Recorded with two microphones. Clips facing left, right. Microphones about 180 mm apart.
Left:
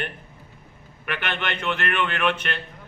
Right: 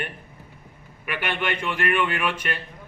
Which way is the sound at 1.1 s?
10° right (ahead or behind).